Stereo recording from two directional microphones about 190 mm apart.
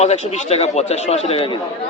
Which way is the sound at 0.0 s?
35° left (ahead or behind).